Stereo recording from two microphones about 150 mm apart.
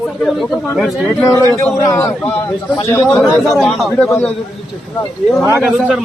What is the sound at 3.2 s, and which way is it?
Speech, centre (ahead or behind).